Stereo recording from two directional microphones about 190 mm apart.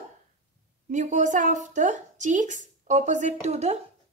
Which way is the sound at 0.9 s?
40° right (ahead or behind).